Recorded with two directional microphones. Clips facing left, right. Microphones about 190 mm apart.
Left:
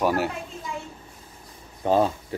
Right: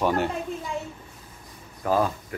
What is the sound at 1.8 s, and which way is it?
Speech, 25° left (ahead or behind).